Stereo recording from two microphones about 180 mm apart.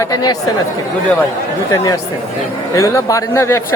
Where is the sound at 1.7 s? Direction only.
20° left (ahead or behind).